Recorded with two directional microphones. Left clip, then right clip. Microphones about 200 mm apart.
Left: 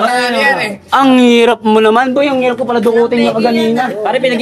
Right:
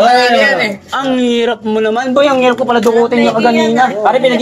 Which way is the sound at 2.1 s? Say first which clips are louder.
Right 3 dB; 15° left (ahead or behind).